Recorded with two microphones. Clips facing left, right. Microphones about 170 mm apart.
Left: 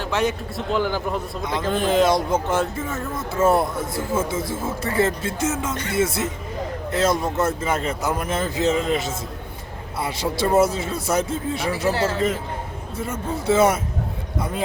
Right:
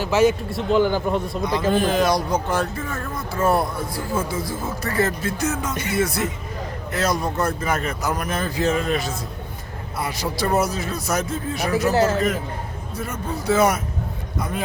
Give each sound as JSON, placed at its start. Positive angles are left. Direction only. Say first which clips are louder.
{"t": 0.0, "sound": "a man's voice", "louder": "right 5 dB", "side_deg": -5}
{"t": 1.8, "sound": "speech", "louder": "left 1 dB", "side_deg": 25}